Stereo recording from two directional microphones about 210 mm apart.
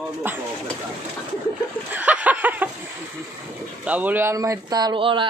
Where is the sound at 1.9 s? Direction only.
5° right (ahead or behind).